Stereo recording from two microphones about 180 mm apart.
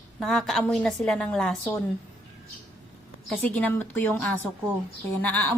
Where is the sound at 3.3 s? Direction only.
10° left (ahead or behind).